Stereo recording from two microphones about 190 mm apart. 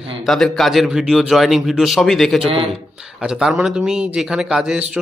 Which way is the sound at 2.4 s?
30° right (ahead or behind).